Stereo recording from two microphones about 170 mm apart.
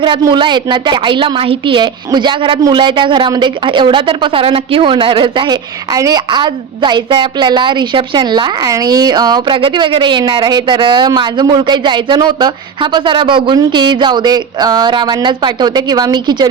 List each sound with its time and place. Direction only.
0.0 s a woman's voice: 25° right (ahead or behind)